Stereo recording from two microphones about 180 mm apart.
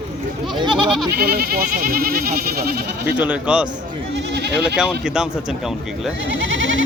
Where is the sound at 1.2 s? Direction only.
60° right (ahead or behind).